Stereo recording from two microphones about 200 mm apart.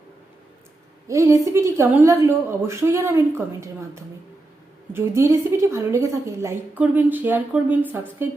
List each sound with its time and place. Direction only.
1.0 s a woman's voice: 15° right (ahead or behind)